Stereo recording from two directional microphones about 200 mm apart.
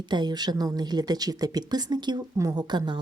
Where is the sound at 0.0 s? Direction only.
20° right (ahead or behind).